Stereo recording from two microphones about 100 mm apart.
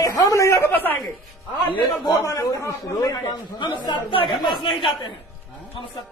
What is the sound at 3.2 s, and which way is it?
Speech, 50° left (ahead or behind).